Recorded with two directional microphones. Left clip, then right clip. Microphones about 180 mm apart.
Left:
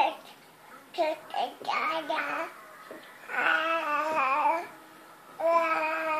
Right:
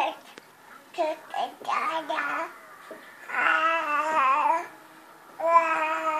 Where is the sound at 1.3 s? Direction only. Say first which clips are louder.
Right 3 dB; 5° left (ahead or behind).